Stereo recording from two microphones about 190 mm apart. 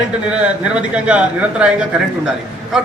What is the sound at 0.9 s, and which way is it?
Speech, 5° right (ahead or behind).